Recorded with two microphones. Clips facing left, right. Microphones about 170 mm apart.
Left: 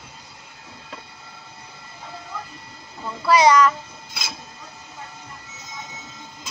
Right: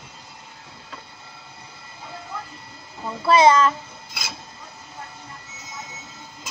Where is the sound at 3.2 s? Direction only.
25° right (ahead or behind).